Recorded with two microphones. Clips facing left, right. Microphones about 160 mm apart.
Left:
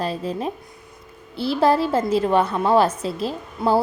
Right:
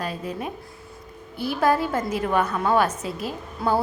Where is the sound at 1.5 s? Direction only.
30° left (ahead or behind).